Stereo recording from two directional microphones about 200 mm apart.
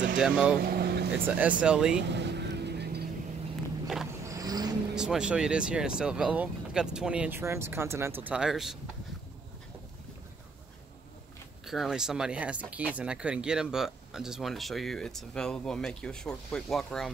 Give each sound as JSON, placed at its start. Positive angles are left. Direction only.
{"t": 0.2, "sound": "speech", "side_deg": -5}
{"t": 0.6, "sound": "vehicle", "side_deg": -50}
{"t": 1.1, "sound": "speech", "side_deg": -5}
{"t": 2.0, "sound": "vehicle", "side_deg": -60}
{"t": 3.8, "sound": "vehicle", "side_deg": 0}
{"t": 4.2, "sound": "vehicle", "side_deg": -15}
{"t": 4.9, "sound": "speech", "side_deg": -5}
{"t": 11.6, "sound": "speech", "side_deg": 0}